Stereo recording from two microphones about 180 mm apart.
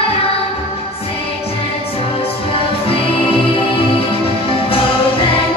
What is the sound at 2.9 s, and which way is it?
Music, 30° left (ahead or behind).